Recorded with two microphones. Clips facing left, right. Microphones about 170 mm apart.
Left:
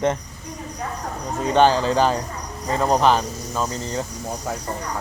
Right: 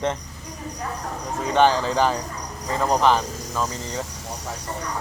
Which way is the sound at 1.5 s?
15° left (ahead or behind).